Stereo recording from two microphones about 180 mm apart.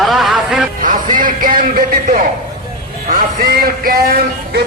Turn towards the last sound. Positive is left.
turn(degrees=-55)  # may be behind; listen again after turning